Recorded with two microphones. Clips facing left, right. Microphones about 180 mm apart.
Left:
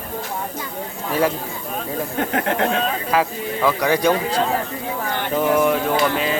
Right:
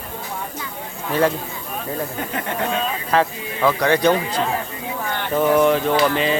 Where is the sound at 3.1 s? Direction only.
5° left (ahead or behind).